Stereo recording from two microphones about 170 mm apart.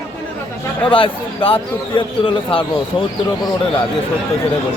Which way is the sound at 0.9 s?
30° left (ahead or behind).